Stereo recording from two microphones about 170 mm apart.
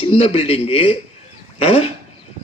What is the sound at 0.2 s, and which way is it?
A man's voice, 35° left (ahead or behind).